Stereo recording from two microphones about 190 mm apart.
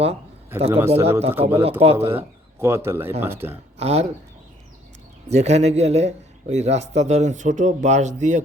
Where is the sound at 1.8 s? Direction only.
30° right (ahead or behind).